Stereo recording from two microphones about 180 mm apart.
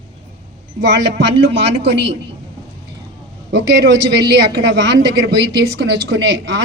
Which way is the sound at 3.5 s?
75° right (ahead or behind).